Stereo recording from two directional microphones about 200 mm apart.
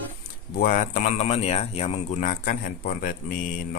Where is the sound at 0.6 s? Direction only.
45° left (ahead or behind).